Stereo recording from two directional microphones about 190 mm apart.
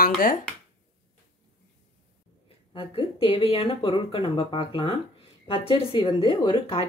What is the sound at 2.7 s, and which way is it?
Speech, 30° left (ahead or behind).